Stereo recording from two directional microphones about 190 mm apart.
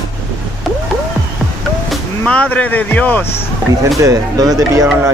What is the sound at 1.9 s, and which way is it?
Speech, 5° left (ahead or behind).